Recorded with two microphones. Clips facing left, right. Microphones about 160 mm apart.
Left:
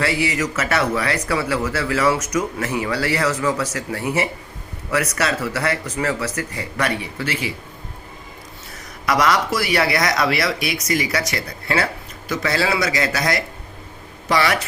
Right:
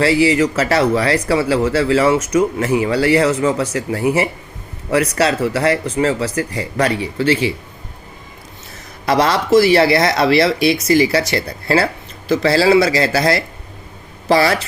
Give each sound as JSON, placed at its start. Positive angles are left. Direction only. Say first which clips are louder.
{"t": 0.0, "sound": "speech", "louder": "right 8 dB", "side_deg": -30}
{"t": 9.0, "sound": "speech", "louder": "right 4 dB", "side_deg": -30}